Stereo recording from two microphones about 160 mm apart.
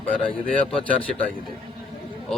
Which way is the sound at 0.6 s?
35° left (ahead or behind).